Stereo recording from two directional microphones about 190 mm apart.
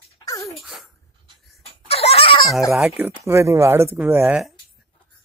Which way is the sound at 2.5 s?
Centre (ahead or behind).